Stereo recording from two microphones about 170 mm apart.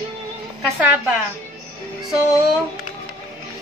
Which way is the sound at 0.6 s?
10° right (ahead or behind).